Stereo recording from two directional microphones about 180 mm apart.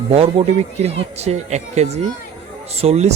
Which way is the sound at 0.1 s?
35° right (ahead or behind).